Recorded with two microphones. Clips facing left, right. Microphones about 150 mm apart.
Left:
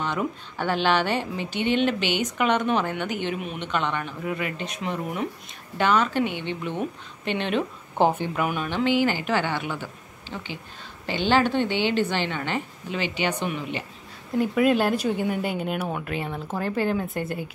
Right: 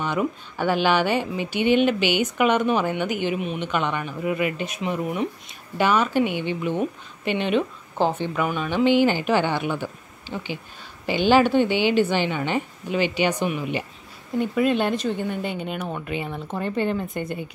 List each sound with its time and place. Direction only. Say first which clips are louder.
0.0 s speech: right 3 dB; 5° right (ahead or behind)
8.0 s speech: even; 10° left (ahead or behind)
8.6 s speech: right 5 dB; 15° right (ahead or behind)
14.4 s speech: left 1 dB; 5° left (ahead or behind)